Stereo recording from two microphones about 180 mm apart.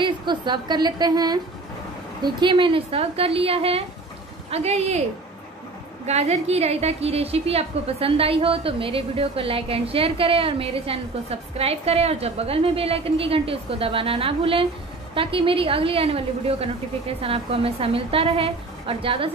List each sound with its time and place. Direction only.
0.0 s a woman's voice: 25° right (ahead or behind)
6.0 s a woman's voice: 40° right (ahead or behind)